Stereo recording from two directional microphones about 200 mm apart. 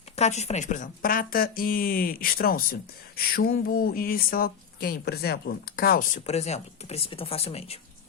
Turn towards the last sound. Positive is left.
turn(degrees=30)  # may be behind; listen again after turning